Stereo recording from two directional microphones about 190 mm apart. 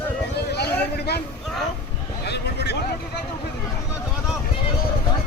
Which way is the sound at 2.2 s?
60° left (ahead or behind).